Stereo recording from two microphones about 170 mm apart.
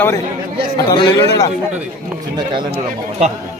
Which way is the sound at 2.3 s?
25° right (ahead or behind).